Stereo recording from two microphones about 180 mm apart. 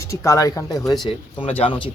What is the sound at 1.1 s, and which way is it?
Speech, 30° left (ahead or behind).